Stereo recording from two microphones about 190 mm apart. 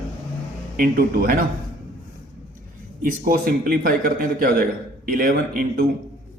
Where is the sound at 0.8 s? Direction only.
50° right (ahead or behind).